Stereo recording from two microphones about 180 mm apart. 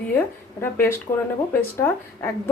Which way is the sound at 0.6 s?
15° left (ahead or behind).